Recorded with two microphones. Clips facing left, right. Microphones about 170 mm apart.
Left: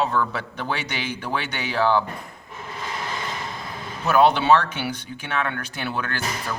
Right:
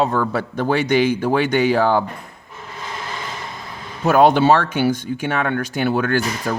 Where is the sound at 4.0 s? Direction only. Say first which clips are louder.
Right 5 dB; 45° right (ahead or behind).